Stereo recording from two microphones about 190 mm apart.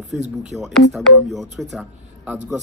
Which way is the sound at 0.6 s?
Centre (ahead or behind).